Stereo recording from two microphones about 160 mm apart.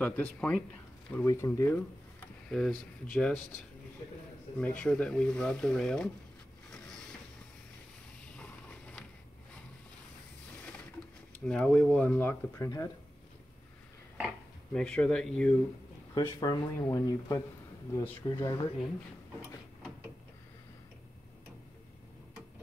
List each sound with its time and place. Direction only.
0.0 s speech: 10° left (ahead or behind)
2.5 s speech: centre (ahead or behind)
4.6 s speech: 5° left (ahead or behind)
8.4 s a sound: 10° left (ahead or behind)
11.4 s speech: 5° left (ahead or behind); by 12.9 s 20° left (ahead or behind)
14.7 s speech: 5° left (ahead or behind)
16.2 s speech: 25° left (ahead or behind)
18.3 s speech: 25° left (ahead or behind)